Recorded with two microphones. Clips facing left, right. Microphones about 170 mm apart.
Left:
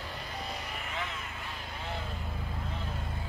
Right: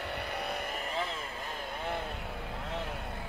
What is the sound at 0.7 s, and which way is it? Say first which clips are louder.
Vehicle: right 3 dB; 35° right (ahead or behind).